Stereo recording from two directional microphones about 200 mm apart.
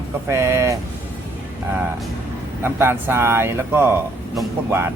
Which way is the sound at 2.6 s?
10° right (ahead or behind).